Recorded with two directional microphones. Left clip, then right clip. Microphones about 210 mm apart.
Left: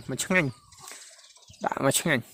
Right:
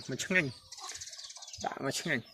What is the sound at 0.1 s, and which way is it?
Speech, 30° left (ahead or behind).